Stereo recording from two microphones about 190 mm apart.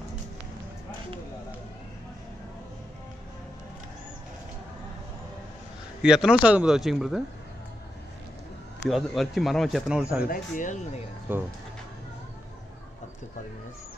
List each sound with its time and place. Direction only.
6.0 s speech: 5° right (ahead or behind)
8.8 s speech: centre (ahead or behind)
10.2 s speech: 45° left (ahead or behind)
11.3 s speech: 10° right (ahead or behind)